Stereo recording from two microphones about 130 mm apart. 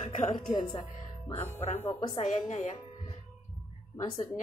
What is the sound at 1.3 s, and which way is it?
Speech, 55° left (ahead or behind).